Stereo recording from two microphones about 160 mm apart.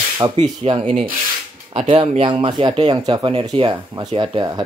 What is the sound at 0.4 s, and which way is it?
Speech, 35° right (ahead or behind).